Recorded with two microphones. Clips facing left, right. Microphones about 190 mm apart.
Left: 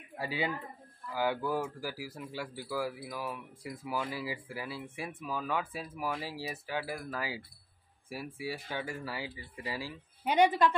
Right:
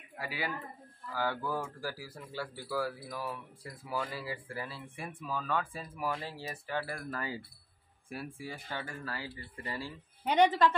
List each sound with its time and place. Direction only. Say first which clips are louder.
0.2 s speech: left 4 dB; 25° left (ahead or behind)
1.1 s speech: left 3 dB; 10° left (ahead or behind)